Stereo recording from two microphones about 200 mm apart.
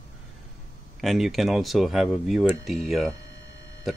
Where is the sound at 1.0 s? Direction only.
Centre (ahead or behind).